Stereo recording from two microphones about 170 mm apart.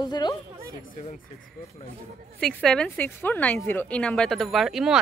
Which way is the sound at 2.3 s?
5° left (ahead or behind).